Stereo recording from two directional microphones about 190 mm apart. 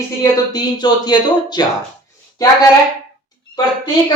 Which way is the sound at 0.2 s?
20° left (ahead or behind).